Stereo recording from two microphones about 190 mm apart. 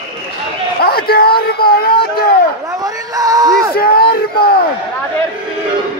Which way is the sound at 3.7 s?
55° left (ahead or behind).